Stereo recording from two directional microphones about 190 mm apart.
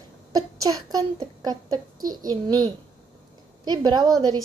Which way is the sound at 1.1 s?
20° right (ahead or behind).